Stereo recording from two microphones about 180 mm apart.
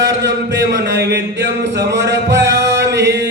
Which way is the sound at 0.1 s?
80° right.